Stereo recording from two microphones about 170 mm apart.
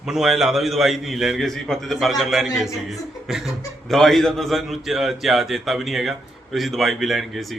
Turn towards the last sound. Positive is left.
turn(degrees=0)  # may be behind; listen again after turning